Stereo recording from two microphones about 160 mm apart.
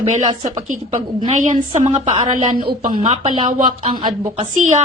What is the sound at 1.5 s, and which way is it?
A woman's voice, 40° right (ahead or behind).